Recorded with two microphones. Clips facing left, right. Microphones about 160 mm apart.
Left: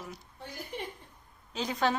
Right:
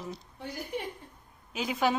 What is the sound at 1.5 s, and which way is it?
Speech, 10° right (ahead or behind).